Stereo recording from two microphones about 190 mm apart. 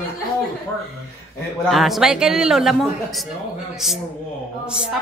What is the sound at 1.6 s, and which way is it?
Speech, centre (ahead or behind).